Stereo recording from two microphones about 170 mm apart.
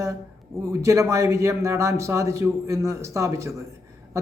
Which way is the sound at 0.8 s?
15° right (ahead or behind).